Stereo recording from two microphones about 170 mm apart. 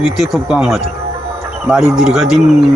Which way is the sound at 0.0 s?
5° right (ahead or behind).